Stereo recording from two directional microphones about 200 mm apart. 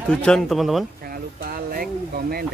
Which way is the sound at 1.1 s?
45° right (ahead or behind).